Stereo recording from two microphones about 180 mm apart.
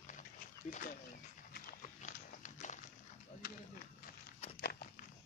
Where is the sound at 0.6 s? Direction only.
45° left (ahead or behind).